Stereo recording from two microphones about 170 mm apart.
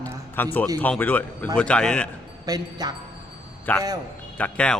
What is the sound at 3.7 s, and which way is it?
Speech, 10° left (ahead or behind).